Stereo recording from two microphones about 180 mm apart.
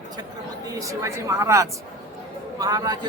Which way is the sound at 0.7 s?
20° right (ahead or behind).